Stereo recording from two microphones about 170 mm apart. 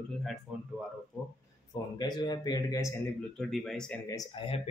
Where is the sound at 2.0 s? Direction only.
25° left (ahead or behind).